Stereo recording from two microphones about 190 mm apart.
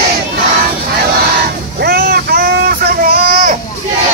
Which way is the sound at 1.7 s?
55° right (ahead or behind).